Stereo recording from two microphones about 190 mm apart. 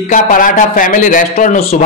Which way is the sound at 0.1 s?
45° left (ahead or behind).